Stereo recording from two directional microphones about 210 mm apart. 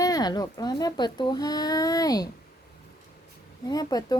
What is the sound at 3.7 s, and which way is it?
Speech, 20° left (ahead or behind).